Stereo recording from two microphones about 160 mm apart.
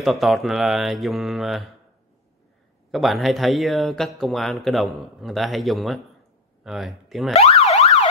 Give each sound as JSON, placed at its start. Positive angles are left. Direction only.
{"t": 0.0, "sound": "speech", "side_deg": 0}
{"t": 2.9, "sound": "speech", "side_deg": 0}
{"t": 7.3, "sound": "emergency vehicle", "side_deg": 40}